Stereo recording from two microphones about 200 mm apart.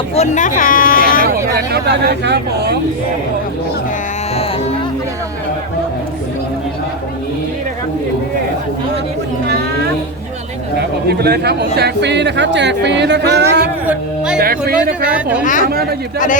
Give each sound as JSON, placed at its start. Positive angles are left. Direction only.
{"t": 0.1, "sound": "speech", "side_deg": 35}
{"t": 1.5, "sound": "speech", "side_deg": -55}
{"t": 11.1, "sound": "a man's voice", "side_deg": -55}
{"t": 15.0, "sound": "a woman's voice", "side_deg": -5}
{"t": 15.7, "sound": "speech", "side_deg": -50}
{"t": 16.1, "sound": "a man's voice", "side_deg": 40}